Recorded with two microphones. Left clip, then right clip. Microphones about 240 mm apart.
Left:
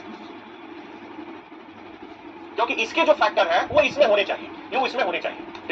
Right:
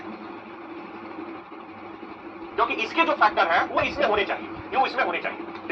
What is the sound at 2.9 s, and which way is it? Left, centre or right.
Speech, left.